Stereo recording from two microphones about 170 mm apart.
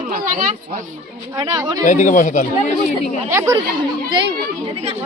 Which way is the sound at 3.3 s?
15° right (ahead or behind).